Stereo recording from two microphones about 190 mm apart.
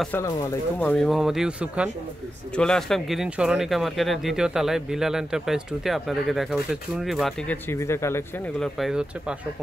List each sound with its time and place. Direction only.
0.7 s speech: 5° left (ahead or behind)
7.7 s speech: 15° left (ahead or behind)
8.5 s speech: centre (ahead or behind)